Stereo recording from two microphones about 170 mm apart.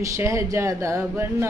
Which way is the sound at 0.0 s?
20° right (ahead or behind).